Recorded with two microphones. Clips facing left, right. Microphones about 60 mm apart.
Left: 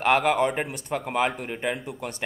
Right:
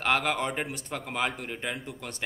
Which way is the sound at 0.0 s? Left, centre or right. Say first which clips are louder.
Left 6 dB; centre.